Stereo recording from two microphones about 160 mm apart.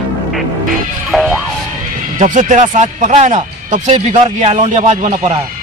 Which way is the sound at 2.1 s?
50° right (ahead or behind).